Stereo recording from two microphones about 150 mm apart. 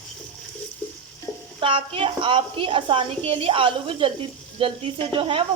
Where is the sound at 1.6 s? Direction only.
35° right (ahead or behind).